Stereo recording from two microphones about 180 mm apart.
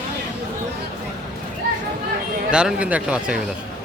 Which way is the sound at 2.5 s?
5° right (ahead or behind).